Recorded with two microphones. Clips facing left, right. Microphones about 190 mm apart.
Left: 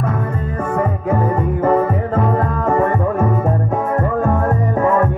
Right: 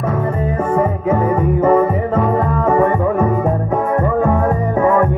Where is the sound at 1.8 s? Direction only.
20° right (ahead or behind).